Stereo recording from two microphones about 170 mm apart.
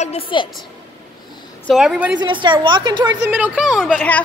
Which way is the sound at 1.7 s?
5° right (ahead or behind).